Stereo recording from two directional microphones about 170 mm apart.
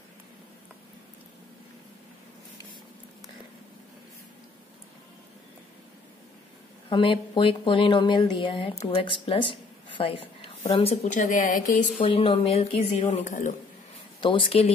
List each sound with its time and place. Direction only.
6.9 s speech: 30° left (ahead or behind); by 11.8 s 50° left (ahead or behind)
12.0 s speech: 35° left (ahead or behind)
14.2 s speech: 30° left (ahead or behind)